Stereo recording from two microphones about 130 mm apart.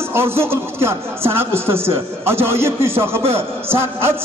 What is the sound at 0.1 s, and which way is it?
Speech, 20° right (ahead or behind).